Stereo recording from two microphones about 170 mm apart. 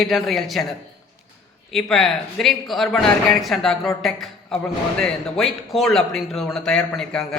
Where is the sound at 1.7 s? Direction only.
Centre (ahead or behind).